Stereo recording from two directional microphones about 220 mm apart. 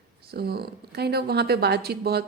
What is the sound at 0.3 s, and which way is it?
Speech, 45° right (ahead or behind).